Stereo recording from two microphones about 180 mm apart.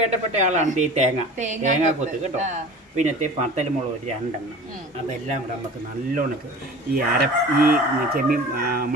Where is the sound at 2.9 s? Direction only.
40° right (ahead or behind).